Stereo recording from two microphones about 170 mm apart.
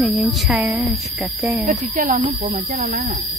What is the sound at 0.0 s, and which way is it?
A woman's voice, centre (ahead or behind).